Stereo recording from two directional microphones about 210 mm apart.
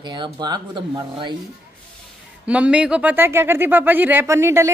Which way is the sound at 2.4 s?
5° right (ahead or behind).